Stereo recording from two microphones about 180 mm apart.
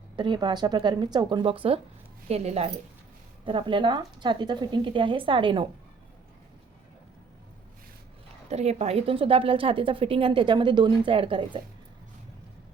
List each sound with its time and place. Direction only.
0.2 s a woman's voice: 25° right (ahead or behind)
8.4 s a woman's voice: 35° right (ahead or behind)